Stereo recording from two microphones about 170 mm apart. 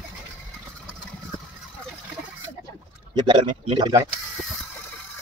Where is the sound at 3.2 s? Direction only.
30° right (ahead or behind).